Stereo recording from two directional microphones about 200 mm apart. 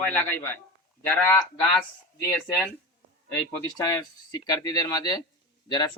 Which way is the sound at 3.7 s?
20° left (ahead or behind).